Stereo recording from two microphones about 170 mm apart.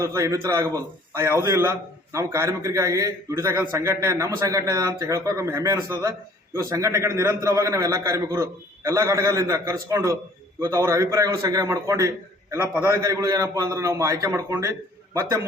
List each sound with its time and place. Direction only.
0.0 s a man's voice: 20° right (ahead or behind)